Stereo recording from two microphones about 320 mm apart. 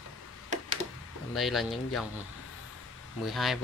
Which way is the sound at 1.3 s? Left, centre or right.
Centre.